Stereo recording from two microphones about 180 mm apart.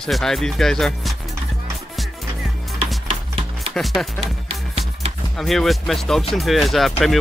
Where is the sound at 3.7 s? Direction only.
Centre (ahead or behind).